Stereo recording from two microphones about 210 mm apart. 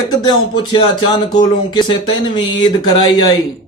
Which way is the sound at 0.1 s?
20° left (ahead or behind).